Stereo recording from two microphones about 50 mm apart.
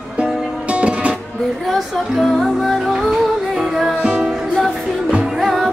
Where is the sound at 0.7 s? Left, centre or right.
Right.